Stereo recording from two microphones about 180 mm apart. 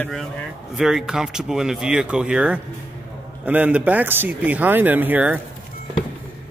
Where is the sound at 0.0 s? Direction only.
Centre (ahead or behind).